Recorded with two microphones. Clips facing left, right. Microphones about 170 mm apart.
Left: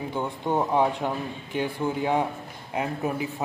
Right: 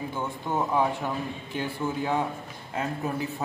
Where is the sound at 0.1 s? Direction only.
15° left (ahead or behind).